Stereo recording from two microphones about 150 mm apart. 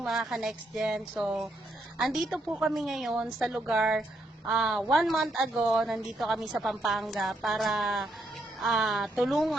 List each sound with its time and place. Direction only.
0.0 s a woman's voice: centre (ahead or behind)